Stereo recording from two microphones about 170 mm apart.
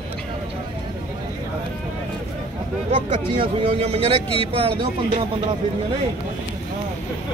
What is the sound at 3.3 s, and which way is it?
Speech, 35° right (ahead or behind).